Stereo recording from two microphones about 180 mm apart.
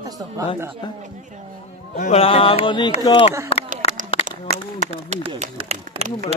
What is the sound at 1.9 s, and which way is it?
Speech, 40° left (ahead or behind).